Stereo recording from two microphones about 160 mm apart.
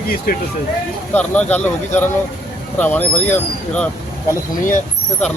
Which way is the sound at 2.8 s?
10° left (ahead or behind).